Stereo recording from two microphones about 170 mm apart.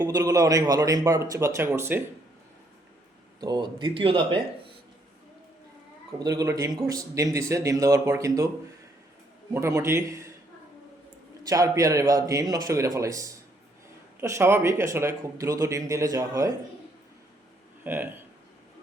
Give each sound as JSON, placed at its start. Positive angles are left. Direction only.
{"t": 0.0, "sound": "speech", "side_deg": -20}
{"t": 3.4, "sound": "speech", "side_deg": -25}
{"t": 6.1, "sound": "speech", "side_deg": -20}
{"t": 9.5, "sound": "a man's voice", "side_deg": -15}
{"t": 11.4, "sound": "a man's voice", "side_deg": -20}
{"t": 17.8, "sound": "a man's voice", "side_deg": -10}